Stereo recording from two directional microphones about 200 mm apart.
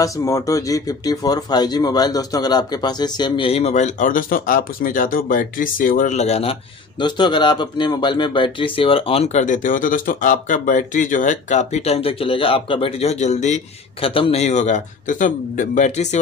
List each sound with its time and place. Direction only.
0.0 s a man's voice: 15° left (ahead or behind); by 16.2 s 35° left (ahead or behind)